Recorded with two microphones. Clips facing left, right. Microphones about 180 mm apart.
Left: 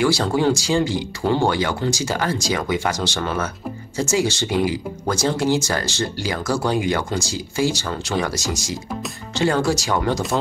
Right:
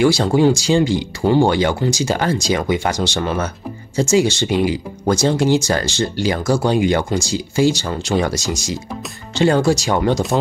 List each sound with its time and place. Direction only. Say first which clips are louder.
0.0 s speech: right 5 dB; 20° right (ahead or behind)